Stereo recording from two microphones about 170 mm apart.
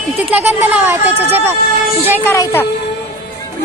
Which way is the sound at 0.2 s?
10° right (ahead or behind).